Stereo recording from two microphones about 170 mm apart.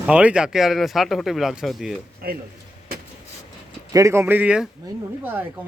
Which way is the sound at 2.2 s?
60° right (ahead or behind).